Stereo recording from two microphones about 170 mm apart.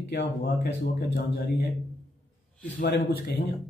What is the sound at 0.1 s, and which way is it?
Speech, 80° left.